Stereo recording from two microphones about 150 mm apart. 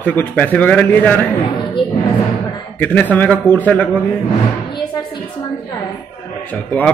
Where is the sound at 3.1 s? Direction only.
10° left (ahead or behind).